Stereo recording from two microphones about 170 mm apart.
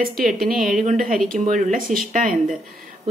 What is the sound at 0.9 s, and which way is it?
Speech, 55° right (ahead or behind).